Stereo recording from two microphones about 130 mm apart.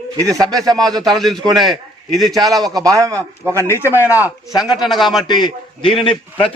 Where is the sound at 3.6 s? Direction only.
20° left (ahead or behind).